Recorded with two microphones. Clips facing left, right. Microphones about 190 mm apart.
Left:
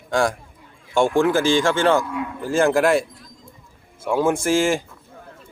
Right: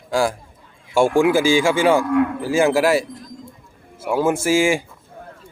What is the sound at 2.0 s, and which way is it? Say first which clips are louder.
Cattle: right 10 dB; 65° right (ahead or behind).